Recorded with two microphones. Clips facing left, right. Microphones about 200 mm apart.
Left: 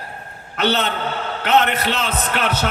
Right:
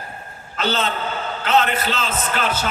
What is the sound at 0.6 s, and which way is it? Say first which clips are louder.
A man's voice: left 2 dB; 65° left (ahead or behind).